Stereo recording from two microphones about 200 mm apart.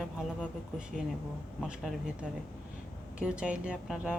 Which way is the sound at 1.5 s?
Centre (ahead or behind).